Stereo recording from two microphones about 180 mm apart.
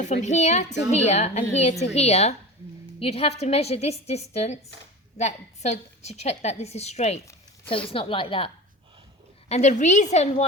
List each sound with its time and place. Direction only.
0.0 s a woman's voice: 40° left (ahead or behind)
9.5 s a woman's voice: 40° left (ahead or behind)